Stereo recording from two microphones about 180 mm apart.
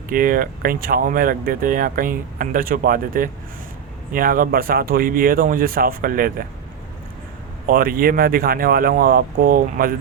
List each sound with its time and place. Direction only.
0.1 s speech: 50° right (ahead or behind)
7.7 s speech: 55° right (ahead or behind)